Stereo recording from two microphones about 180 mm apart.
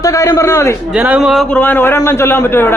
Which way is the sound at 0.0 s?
20° left (ahead or behind).